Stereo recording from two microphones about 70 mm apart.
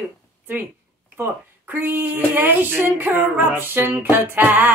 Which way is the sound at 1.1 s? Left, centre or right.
Right.